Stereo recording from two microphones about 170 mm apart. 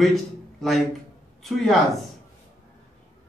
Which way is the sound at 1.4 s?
Centre (ahead or behind).